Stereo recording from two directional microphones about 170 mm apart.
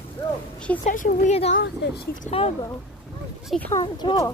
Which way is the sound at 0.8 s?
50° left (ahead or behind).